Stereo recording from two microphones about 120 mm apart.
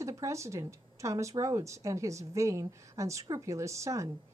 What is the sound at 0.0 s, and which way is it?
Speech, 25° right (ahead or behind).